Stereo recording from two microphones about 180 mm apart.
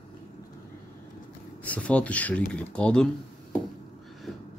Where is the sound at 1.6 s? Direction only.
5° left (ahead or behind).